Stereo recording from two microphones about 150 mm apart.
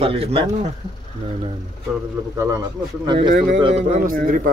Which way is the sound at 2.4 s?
20° right (ahead or behind).